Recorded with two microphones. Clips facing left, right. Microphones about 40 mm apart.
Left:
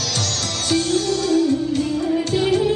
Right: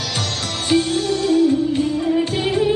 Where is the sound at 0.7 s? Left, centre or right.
Right.